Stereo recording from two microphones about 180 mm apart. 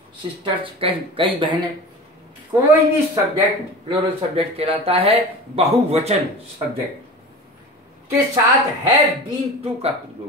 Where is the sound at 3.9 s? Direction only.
35° right (ahead or behind).